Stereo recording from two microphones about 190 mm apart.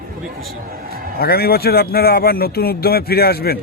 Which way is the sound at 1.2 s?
55° left (ahead or behind).